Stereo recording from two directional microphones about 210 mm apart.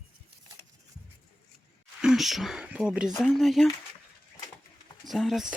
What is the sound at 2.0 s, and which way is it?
Speech, centre (ahead or behind).